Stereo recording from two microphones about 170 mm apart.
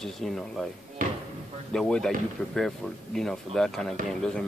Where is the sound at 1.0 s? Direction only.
50° right (ahead or behind).